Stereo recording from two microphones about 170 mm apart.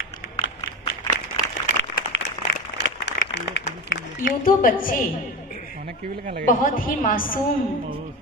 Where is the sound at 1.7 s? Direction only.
90° left.